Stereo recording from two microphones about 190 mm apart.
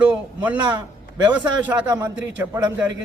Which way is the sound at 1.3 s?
10° right (ahead or behind).